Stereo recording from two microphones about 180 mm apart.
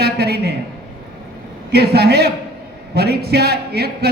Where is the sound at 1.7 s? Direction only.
60° right (ahead or behind).